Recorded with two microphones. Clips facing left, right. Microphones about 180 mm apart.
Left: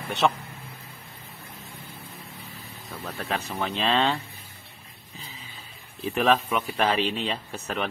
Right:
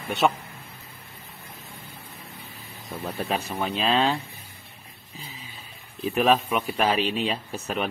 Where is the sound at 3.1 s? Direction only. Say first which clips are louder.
Right 3 dB; 15° right (ahead or behind).